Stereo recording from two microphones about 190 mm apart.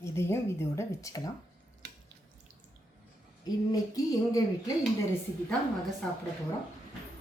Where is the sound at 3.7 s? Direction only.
20° left (ahead or behind).